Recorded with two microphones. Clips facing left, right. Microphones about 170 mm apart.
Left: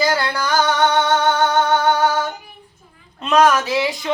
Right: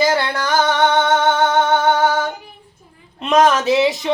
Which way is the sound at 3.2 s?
20° right (ahead or behind).